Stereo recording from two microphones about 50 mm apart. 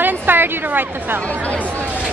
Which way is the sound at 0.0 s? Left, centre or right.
Right.